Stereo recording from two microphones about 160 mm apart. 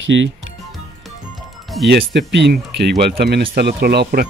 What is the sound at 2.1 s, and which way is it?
Speech, 90° right.